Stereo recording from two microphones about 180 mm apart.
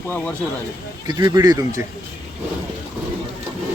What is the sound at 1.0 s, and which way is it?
Speech, 20° right (ahead or behind).